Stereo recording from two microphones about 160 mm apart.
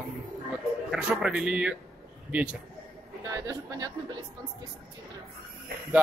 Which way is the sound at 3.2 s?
20° right (ahead or behind).